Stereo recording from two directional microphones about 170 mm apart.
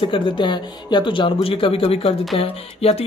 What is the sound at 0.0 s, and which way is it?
Speech, 30° left (ahead or behind).